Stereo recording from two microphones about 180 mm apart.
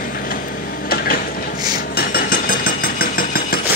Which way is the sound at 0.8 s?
55° left (ahead or behind).